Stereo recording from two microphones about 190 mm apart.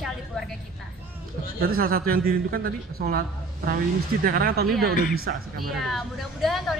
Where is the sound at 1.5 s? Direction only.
50° right (ahead or behind).